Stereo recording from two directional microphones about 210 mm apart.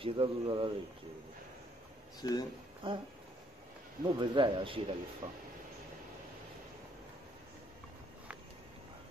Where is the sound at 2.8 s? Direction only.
25° right (ahead or behind).